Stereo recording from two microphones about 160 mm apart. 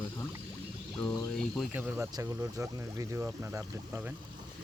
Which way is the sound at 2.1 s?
20° right (ahead or behind).